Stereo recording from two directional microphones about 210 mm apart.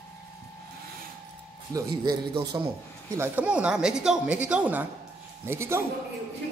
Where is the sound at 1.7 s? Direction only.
20° right (ahead or behind).